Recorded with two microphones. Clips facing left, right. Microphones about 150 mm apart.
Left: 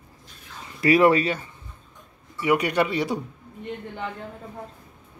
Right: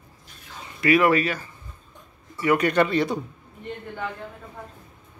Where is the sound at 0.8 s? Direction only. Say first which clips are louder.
Left 1 dB; 30° left (ahead or behind).